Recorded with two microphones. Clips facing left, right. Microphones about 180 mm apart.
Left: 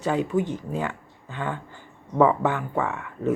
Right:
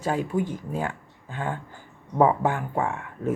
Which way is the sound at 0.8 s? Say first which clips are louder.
Left 1 dB; 45° right (ahead or behind).